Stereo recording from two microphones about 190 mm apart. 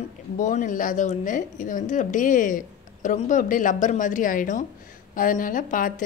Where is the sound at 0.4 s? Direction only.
40° left (ahead or behind).